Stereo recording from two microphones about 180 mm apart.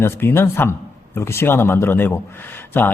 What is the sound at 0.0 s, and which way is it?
A man's voice, 15° left (ahead or behind).